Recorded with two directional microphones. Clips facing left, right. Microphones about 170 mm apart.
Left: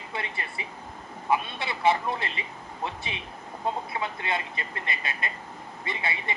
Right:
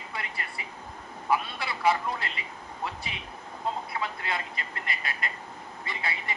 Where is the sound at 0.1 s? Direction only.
25° left (ahead or behind).